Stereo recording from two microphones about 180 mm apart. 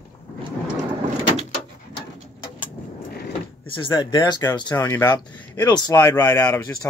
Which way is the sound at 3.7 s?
25° left (ahead or behind).